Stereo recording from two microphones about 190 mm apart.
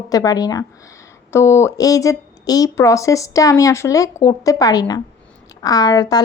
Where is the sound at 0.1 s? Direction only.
20° left (ahead or behind).